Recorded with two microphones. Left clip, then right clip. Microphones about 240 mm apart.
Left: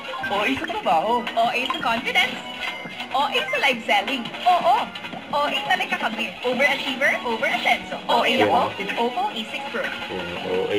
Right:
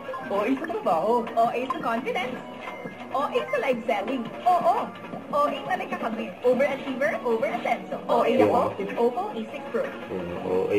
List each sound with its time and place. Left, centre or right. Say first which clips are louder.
0.3 s a woman's voice: left 3 dB; centre